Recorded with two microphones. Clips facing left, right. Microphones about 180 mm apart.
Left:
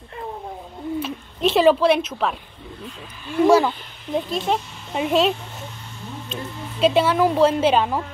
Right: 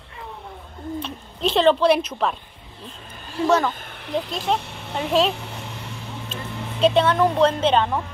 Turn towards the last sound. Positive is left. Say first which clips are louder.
# left 1 dB
turn(degrees=5)  # may be behind; listen again after turning